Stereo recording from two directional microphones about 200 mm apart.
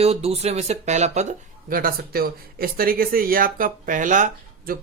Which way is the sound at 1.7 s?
50° right (ahead or behind).